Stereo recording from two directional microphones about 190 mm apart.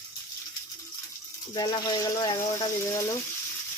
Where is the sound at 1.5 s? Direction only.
20° left (ahead or behind).